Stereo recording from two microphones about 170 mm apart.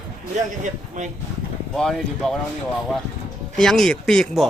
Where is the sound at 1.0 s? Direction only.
45° right (ahead or behind).